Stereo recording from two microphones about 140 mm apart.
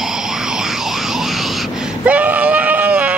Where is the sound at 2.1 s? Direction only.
10° right (ahead or behind).